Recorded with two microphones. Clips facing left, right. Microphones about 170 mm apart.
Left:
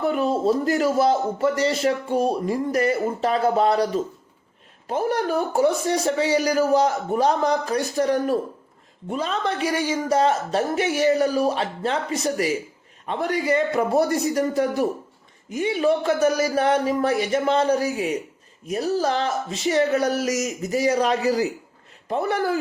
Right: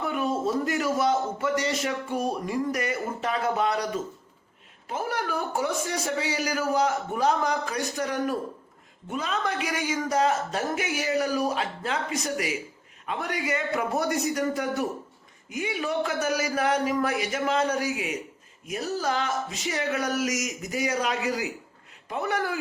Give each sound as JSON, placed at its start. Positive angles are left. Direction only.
{"t": 0.0, "sound": "speech", "side_deg": 30}